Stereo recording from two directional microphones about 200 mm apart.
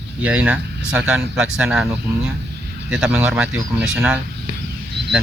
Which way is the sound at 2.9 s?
5° right (ahead or behind).